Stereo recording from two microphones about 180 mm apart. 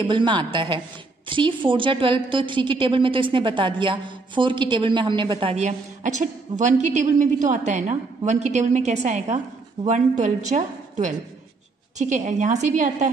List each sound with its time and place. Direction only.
0.0 s a woman's voice: 25° right (ahead or behind); by 13.1 s 40° right (ahead or behind)